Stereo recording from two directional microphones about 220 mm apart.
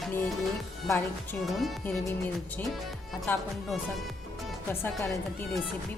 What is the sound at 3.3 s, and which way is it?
Music, 10° left (ahead or behind).